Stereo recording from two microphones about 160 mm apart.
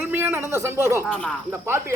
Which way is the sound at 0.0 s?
15° right (ahead or behind).